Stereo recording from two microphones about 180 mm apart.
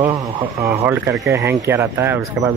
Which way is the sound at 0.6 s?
10° right (ahead or behind).